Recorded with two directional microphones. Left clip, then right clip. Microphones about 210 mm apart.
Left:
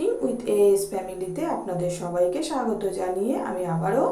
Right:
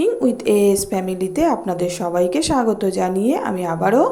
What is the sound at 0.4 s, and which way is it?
A woman's voice, 45° right (ahead or behind).